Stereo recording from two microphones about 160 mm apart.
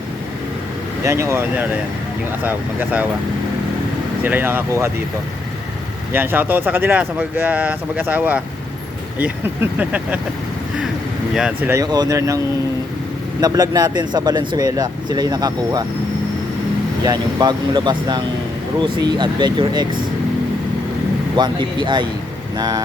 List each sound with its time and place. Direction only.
1.0 s speech: 20° right (ahead or behind)
4.2 s speech: 10° right (ahead or behind)
6.1 s speech: 10° right (ahead or behind)
11.3 s speech: 5° right (ahead or behind)
11.7 s speech: 25° right (ahead or behind)
13.4 s speech: 25° right (ahead or behind)
17.1 s speech: 25° right (ahead or behind)
21.3 s speech: 30° right (ahead or behind)